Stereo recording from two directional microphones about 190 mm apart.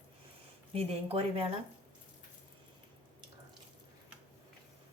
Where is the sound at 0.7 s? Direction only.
30° right (ahead or behind).